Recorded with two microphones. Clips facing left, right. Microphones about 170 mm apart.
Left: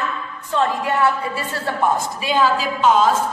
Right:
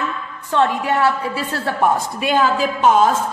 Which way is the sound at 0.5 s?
65° right (ahead or behind).